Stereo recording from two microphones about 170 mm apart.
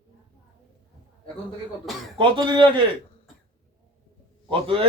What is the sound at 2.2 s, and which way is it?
Speech, 30° right (ahead or behind).